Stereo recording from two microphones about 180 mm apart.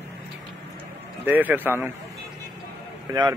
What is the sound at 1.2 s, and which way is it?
Speech, 10° right (ahead or behind).